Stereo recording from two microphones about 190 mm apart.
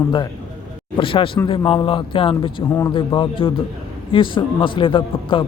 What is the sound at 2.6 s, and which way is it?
Speech, 15° left (ahead or behind).